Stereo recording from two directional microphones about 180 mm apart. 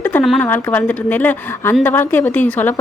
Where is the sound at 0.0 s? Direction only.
10° left (ahead or behind).